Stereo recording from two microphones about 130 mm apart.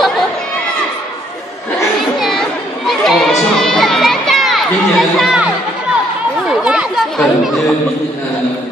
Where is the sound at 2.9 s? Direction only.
Centre (ahead or behind).